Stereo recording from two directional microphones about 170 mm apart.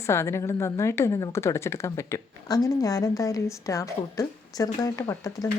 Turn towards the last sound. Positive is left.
turn(degrees=20)  # may be behind; listen again after turning